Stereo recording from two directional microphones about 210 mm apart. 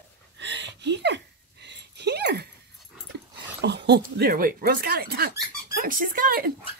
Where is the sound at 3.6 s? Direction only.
55° right (ahead or behind).